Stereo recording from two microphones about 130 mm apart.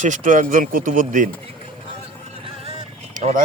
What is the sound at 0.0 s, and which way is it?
Speech, 80° right.